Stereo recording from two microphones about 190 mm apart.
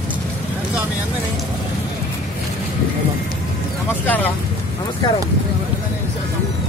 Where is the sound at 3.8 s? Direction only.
10° left (ahead or behind).